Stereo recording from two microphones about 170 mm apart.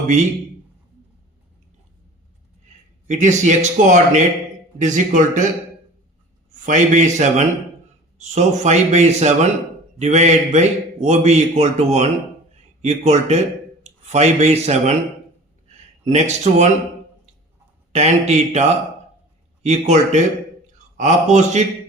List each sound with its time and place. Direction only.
3.1 s a man's voice: 45° right (ahead or behind)
6.5 s a man's voice: 45° right (ahead or behind)
17.9 s a man's voice: 40° right (ahead or behind)
19.6 s a man's voice: 40° right (ahead or behind)